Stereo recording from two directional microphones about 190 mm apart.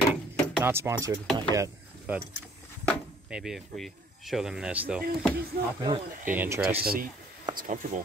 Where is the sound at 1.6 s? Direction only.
10° right (ahead or behind).